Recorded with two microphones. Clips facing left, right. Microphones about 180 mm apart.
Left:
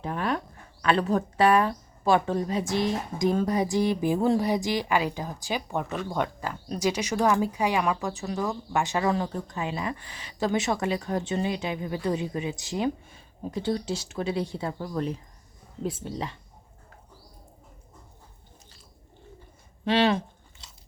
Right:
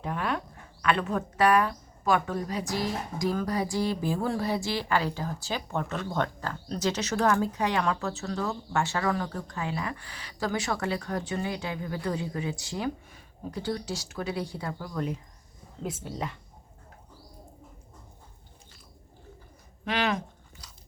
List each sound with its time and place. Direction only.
0.0 s speech: 35° left (ahead or behind)
19.8 s chewing: 30° left (ahead or behind)